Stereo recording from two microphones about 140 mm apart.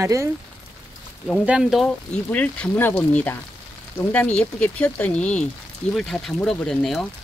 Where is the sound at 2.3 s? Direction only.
10° left (ahead or behind).